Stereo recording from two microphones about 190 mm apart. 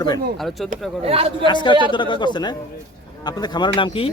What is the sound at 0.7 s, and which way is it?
Speech, 30° right (ahead or behind).